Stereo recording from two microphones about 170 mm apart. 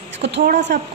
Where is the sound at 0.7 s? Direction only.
75° right (ahead or behind).